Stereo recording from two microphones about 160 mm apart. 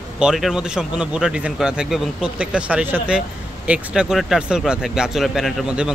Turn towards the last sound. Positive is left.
turn(degrees=-5)  # may be behind; listen again after turning